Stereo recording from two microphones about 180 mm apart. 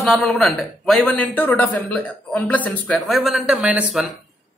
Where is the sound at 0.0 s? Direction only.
Centre (ahead or behind).